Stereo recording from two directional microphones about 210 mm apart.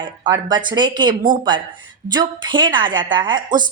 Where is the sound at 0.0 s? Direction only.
20° right (ahead or behind).